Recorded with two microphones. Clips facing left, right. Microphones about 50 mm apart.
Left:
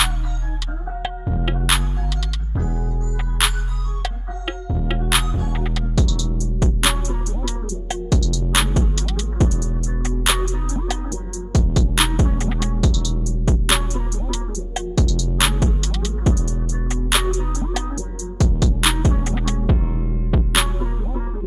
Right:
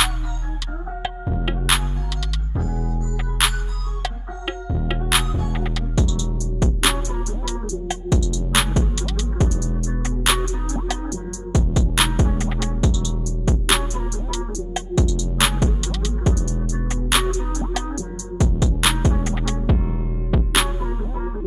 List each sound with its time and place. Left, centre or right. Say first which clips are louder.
1.0 s music: left 1 dB; centre
5.9 s music: even; right
6.6 s music: even; centre
8.1 s music: right 1 dB; right
8.5 s music: even; centre
11.5 s music: left 1 dB; centre
11.9 s music: right 1 dB; centre
12.8 s music: right 1 dB; right
13.2 s music: left 1 dB; centre
15.0 s music: right 1 dB; right
15.3 s music: even; centre
17.8 s music: even; centre
18.8 s music: even; centre